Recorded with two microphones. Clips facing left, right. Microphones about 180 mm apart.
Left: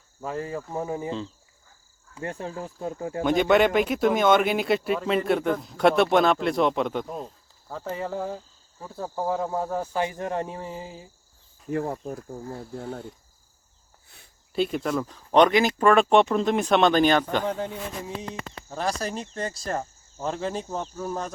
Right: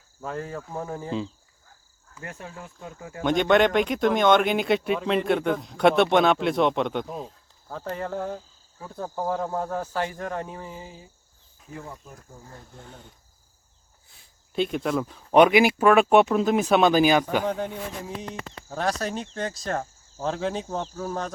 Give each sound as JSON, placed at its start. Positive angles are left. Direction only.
{"t": 0.2, "sound": "speech", "side_deg": 5}
{"t": 2.1, "sound": "speech", "side_deg": 30}
{"t": 3.2, "sound": "speech", "side_deg": 5}
{"t": 11.7, "sound": "speech", "side_deg": 65}
{"t": 14.5, "sound": "speech", "side_deg": 0}